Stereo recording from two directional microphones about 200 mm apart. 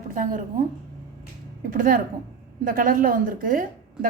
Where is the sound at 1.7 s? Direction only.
45° right (ahead or behind).